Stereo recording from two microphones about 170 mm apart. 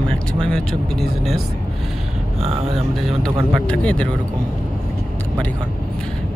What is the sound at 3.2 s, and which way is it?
Speech, 5° left (ahead or behind).